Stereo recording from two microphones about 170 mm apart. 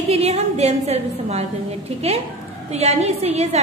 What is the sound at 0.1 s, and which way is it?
A woman's voice, 40° right (ahead or behind).